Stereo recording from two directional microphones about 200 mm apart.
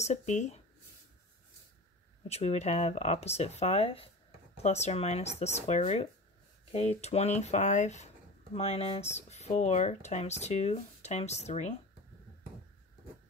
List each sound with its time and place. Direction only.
0.0 s speech: 35° left (ahead or behind)
2.2 s speech: 30° left (ahead or behind)